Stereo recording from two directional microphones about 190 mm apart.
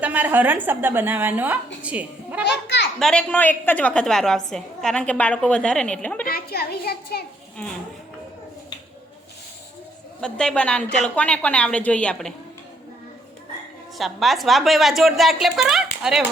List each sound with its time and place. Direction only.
0.0 s a woman's voice: 10° right (ahead or behind)
2.4 s children playing: 65° left (ahead or behind)
3.0 s a woman's voice: 5° left (ahead or behind)
6.2 s a sound: 55° left (ahead or behind)
10.2 s a woman's voice: 5° left (ahead or behind)
14.0 s a woman's voice: centre (ahead or behind)